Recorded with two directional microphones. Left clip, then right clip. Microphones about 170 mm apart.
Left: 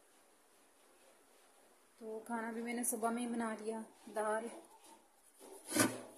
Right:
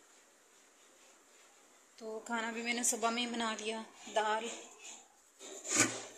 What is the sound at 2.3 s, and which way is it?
A woman's voice, 15° left (ahead or behind).